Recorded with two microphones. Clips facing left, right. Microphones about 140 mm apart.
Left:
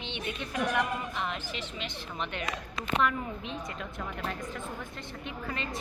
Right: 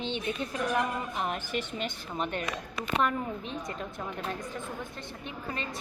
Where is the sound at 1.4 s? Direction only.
55° right (ahead or behind); by 4.0 s 40° right (ahead or behind).